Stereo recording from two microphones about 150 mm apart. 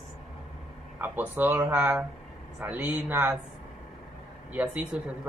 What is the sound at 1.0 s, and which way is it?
A man's voice, 10° right (ahead or behind).